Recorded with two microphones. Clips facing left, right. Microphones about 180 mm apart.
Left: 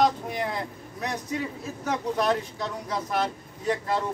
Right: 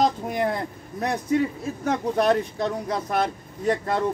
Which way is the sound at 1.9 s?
55° right (ahead or behind).